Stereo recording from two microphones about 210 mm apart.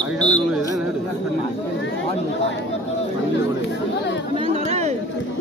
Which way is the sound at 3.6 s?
55° left (ahead or behind).